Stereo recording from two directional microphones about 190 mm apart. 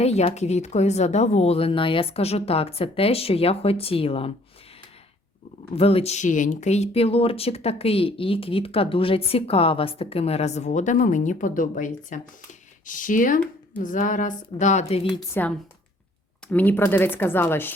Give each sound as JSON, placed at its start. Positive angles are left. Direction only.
{"t": 0.0, "sound": "speech", "side_deg": 35}
{"t": 5.7, "sound": "speech", "side_deg": 30}
{"t": 15.3, "sound": "speech", "side_deg": 10}